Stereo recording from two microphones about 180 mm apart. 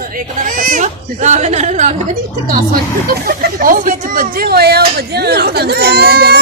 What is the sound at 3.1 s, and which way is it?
Speech, 55° right (ahead or behind).